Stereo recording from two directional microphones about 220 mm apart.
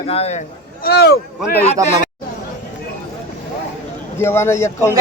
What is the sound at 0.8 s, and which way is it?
Speech, 45° left (ahead or behind).